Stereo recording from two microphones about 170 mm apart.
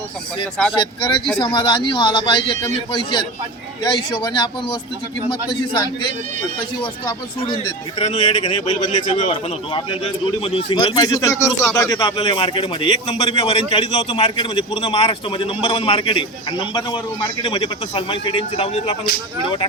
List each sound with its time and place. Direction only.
0.7 s speech: 25° left (ahead or behind)
4.1 s speech: 25° left (ahead or behind)